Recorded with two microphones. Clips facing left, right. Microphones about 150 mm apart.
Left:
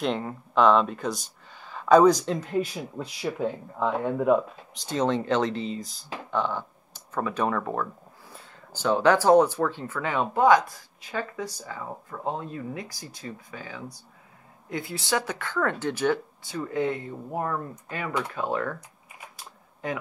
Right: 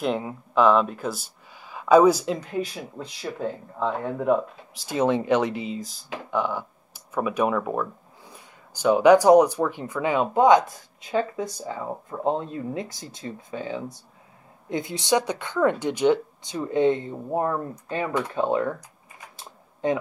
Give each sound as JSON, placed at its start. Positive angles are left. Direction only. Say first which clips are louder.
{"t": 0.0, "sound": "speech", "louder": "right 2 dB", "side_deg": -5}
{"t": 4.8, "sound": "speech", "louder": "right 3 dB", "side_deg": -10}
{"t": 6.3, "sound": "speech", "louder": "right 2 dB", "side_deg": -10}
{"t": 19.3, "sound": "typing", "louder": "right 2 dB", "side_deg": -25}